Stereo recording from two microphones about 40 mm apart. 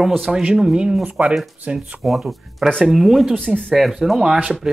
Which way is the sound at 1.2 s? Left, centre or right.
Right.